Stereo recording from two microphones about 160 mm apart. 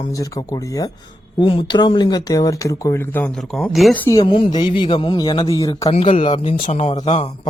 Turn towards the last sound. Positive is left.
turn(degrees=45)  # may be behind; listen again after turning